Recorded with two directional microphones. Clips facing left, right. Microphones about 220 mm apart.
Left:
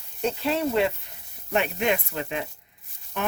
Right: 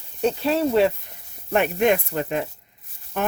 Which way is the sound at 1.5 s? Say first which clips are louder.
Right 5 dB; 50° right (ahead or behind).